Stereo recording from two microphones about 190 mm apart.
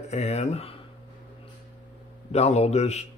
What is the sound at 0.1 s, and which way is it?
Speech, 35° left (ahead or behind).